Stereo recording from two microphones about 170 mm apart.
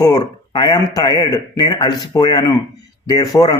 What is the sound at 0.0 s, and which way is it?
Speech, 25° left (ahead or behind).